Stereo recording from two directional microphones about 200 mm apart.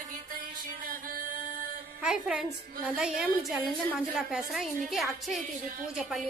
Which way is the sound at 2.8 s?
Centre (ahead or behind).